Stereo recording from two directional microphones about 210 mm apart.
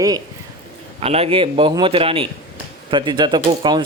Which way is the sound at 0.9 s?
30° right (ahead or behind).